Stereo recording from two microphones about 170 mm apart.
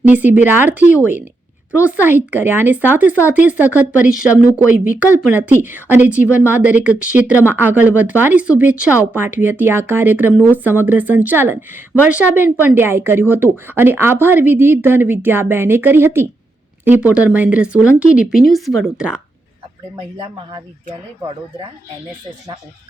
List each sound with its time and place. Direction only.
0.0 s speech: 10° right (ahead or behind)
20.1 s speech: 25° right (ahead or behind)